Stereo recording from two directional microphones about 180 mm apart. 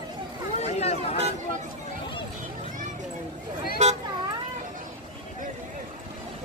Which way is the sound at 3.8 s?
40° right (ahead or behind).